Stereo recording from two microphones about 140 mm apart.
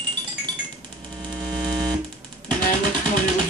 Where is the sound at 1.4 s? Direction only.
30° right (ahead or behind).